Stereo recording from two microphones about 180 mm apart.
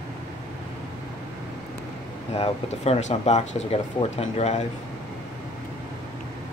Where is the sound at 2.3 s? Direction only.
35° left (ahead or behind).